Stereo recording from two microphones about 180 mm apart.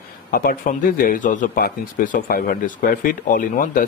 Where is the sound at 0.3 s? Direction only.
50° left (ahead or behind).